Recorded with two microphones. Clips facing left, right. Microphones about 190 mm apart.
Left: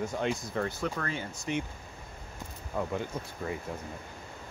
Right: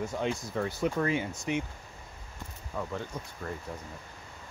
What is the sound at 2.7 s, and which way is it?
Speech, 15° left (ahead or behind).